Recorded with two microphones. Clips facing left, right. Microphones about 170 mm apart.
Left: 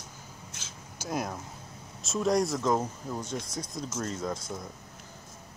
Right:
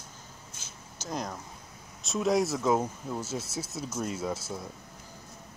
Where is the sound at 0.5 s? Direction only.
80° left.